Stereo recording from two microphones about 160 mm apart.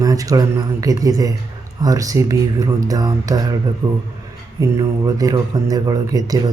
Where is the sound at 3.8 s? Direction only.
10° right (ahead or behind).